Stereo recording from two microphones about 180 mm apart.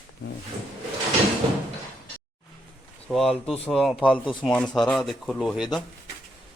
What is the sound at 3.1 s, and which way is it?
Speech, centre (ahead or behind).